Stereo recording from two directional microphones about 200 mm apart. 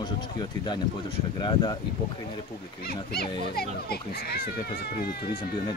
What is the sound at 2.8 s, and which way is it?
A child's voice, 50° left (ahead or behind).